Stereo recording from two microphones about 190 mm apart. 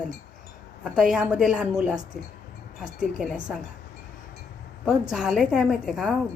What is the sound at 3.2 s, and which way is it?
Speech, 5° right (ahead or behind).